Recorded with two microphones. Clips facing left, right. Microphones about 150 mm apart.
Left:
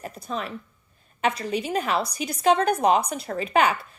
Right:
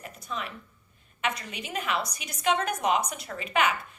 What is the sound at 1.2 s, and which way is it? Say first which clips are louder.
A woman's voice: left 8 dB; 35° left (ahead or behind).